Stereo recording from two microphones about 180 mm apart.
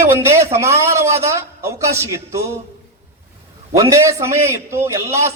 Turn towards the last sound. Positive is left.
turn(degrees=-15)  # may be behind; listen again after turning